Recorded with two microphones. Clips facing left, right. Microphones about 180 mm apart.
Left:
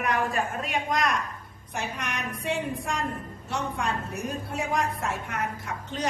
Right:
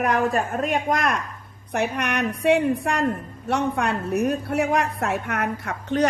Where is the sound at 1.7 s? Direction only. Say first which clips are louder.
Right 9 dB; 65° right (ahead or behind).